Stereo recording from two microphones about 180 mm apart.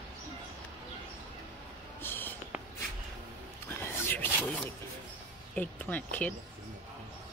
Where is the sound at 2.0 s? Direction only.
10° left (ahead or behind).